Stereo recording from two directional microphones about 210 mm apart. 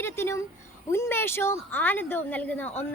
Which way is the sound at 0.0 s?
10° left (ahead or behind).